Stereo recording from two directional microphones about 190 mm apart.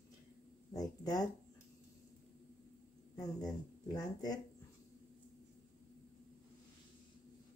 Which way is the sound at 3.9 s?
20° left (ahead or behind).